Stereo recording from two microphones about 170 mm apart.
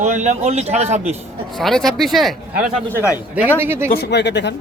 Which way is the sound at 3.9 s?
75° left (ahead or behind).